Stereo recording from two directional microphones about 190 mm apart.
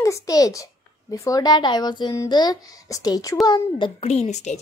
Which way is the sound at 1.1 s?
15° left (ahead or behind).